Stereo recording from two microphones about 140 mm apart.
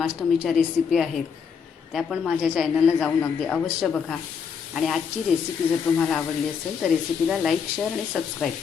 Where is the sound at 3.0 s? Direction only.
10° left (ahead or behind).